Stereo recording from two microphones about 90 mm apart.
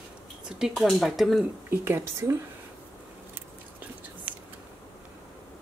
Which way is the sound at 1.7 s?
25° right (ahead or behind).